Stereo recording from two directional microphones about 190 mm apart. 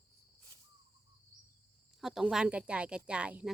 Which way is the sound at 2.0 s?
Centre (ahead or behind).